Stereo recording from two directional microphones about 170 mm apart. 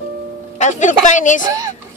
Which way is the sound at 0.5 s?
45° left (ahead or behind).